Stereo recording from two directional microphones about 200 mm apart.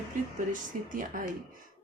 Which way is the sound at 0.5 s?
40° right (ahead or behind).